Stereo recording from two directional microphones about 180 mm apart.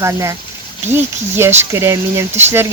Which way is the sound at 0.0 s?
15° right (ahead or behind).